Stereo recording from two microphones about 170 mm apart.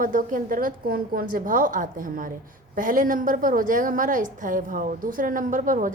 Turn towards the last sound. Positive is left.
turn(degrees=-50)  # may be behind; listen again after turning